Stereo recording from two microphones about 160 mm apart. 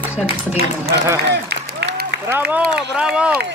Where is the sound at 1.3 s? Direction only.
90° right.